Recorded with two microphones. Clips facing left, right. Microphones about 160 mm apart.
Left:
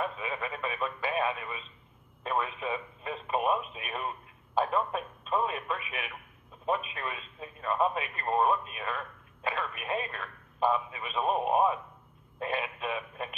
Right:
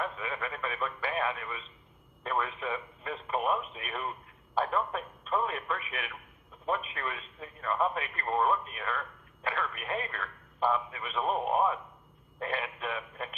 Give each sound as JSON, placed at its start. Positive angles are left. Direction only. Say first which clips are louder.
{"t": 0.0, "sound": "speech", "louder": "left 1 dB", "side_deg": 15}